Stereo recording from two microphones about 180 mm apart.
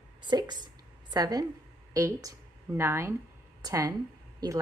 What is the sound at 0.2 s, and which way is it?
A woman's voice, 25° right (ahead or behind).